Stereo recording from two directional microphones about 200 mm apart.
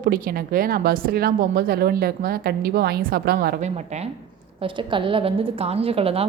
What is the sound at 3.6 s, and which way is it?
A woman's voice, 35° right (ahead or behind).